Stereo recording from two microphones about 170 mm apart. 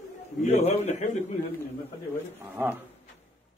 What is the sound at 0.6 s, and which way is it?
Speech, 40° left (ahead or behind).